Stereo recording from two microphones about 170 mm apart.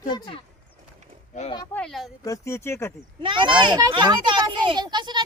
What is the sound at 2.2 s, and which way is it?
Speech, 20° left (ahead or behind).